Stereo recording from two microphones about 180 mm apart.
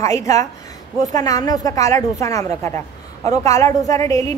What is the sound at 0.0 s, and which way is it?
A woman's voice, 15° left (ahead or behind).